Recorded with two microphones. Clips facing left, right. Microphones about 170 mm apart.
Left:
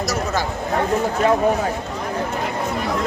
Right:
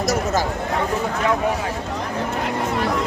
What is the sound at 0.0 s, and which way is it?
Speech, 55° right (ahead or behind).